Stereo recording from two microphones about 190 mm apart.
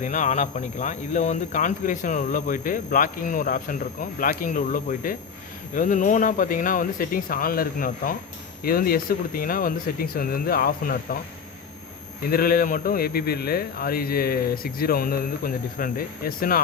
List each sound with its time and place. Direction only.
0.0 s speech: 40° left (ahead or behind)
12.2 s speech: 50° left (ahead or behind)